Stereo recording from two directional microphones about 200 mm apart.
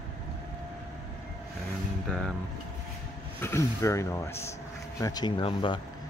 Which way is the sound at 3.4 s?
15° left (ahead or behind).